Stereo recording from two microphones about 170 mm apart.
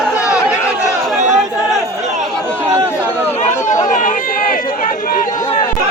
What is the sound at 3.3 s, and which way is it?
Chatter, 45° left (ahead or behind).